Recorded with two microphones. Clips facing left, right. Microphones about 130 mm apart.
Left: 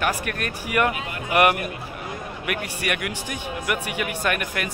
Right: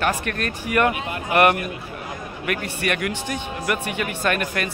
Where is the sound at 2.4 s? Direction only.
10° left (ahead or behind).